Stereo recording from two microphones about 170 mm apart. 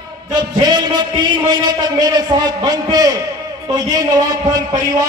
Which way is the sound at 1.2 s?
25° right (ahead or behind).